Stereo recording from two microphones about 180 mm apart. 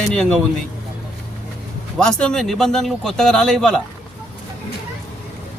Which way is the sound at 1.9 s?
5° left (ahead or behind).